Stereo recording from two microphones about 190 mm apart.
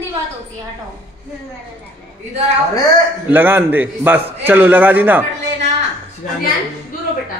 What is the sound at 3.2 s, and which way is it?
A man's voice, 10° right (ahead or behind).